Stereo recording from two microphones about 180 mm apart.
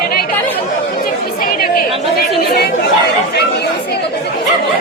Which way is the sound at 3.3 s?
65° left (ahead or behind).